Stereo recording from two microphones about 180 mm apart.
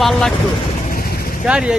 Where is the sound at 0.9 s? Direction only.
55° left (ahead or behind).